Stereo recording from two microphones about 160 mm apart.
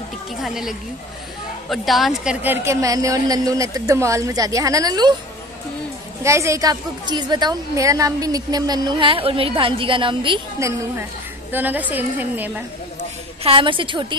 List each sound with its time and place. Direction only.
0.4 s speech: centre (ahead or behind)
2.4 s a woman's voice: 15° right (ahead or behind)
6.2 s a woman's voice: 20° right (ahead or behind)
10.6 s a woman's voice: 20° right (ahead or behind)
13.4 s a woman's voice: 35° right (ahead or behind)